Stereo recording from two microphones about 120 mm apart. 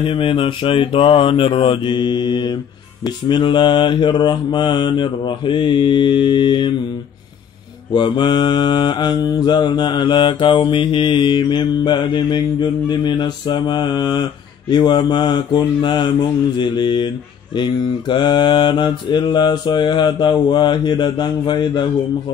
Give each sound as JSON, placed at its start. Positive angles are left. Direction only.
{"t": 0.0, "sound": "speech", "side_deg": 50}
{"t": 3.3, "sound": "mantra", "side_deg": 40}
{"t": 7.9, "sound": "mantra", "side_deg": 40}